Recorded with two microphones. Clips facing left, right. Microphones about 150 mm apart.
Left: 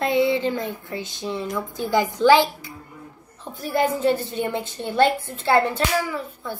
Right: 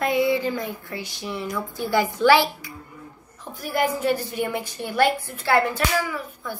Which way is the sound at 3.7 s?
25° left (ahead or behind).